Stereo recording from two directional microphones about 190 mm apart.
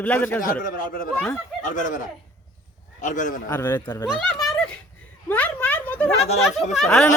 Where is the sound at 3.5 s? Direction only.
10° left (ahead or behind).